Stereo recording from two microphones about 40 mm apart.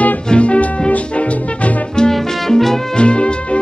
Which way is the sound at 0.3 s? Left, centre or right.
Left.